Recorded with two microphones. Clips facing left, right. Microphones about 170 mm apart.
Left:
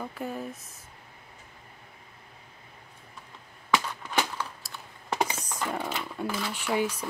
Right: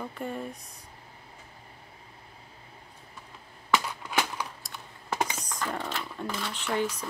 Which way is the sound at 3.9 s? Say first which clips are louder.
Left 1 dB; 10° right (ahead or behind).